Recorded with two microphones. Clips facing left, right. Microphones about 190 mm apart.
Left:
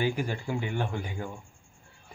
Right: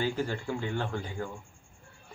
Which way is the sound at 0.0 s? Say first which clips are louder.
Left 1 dB; 15° left (ahead or behind).